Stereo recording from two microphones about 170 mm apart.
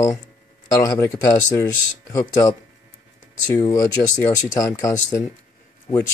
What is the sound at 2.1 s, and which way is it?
Speech, 25° left (ahead or behind).